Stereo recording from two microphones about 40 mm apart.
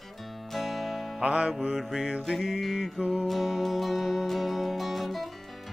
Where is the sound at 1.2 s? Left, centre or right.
Right.